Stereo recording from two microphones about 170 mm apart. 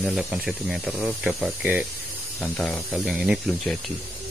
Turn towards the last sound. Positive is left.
turn(degrees=-5)  # may be behind; listen again after turning